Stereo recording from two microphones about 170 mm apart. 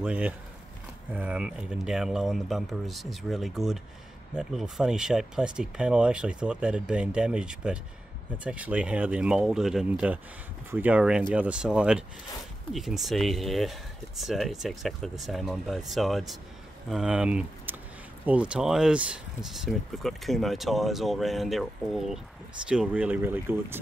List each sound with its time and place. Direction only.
0.0 s speech: 5° right (ahead or behind)